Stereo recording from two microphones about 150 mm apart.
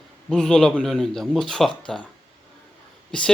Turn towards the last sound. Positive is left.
turn(degrees=5)  # may be behind; listen again after turning